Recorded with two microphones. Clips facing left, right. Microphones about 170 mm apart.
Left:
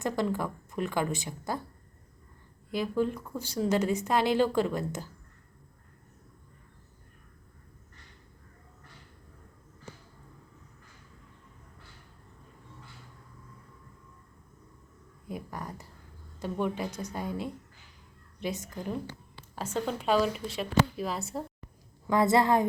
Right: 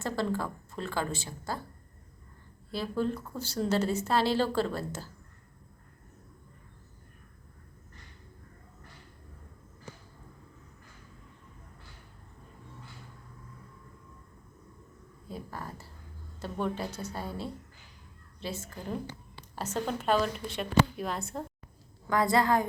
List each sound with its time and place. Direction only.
0.0 s a woman's voice: 20° left (ahead or behind)
2.7 s a woman's voice: 15° left (ahead or behind)
15.3 s a sound: 15° left (ahead or behind)
16.4 s a woman's voice: 15° left (ahead or behind)
19.7 s speech: 5° right (ahead or behind)
22.0 s a woman's voice: 25° left (ahead or behind)